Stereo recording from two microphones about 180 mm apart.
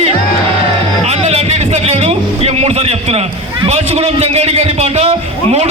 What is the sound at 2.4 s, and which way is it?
A man's voice, 35° right (ahead or behind).